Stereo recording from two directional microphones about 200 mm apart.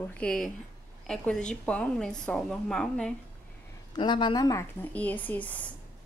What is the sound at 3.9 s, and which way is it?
Speech, 25° left (ahead or behind).